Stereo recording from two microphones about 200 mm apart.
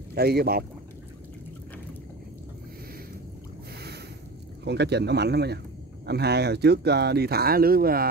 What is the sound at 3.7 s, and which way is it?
Boat, 55° right (ahead or behind).